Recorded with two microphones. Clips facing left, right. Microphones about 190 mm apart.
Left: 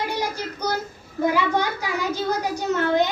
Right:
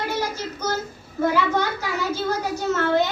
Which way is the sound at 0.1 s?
15° left (ahead or behind).